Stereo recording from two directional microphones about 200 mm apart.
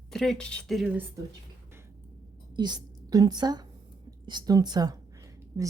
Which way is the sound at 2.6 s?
20° right (ahead or behind).